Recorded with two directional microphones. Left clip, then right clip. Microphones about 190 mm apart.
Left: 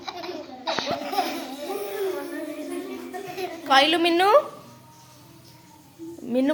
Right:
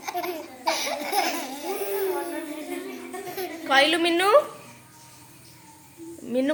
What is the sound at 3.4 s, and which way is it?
A woman's voice, 5° left (ahead or behind).